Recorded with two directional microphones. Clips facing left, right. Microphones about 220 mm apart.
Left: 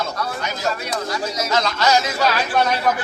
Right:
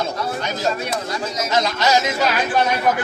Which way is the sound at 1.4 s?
20° right (ahead or behind).